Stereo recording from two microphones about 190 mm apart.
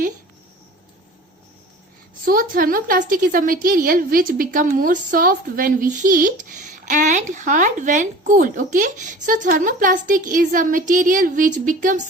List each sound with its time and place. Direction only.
2.2 s speech: 50° right (ahead or behind)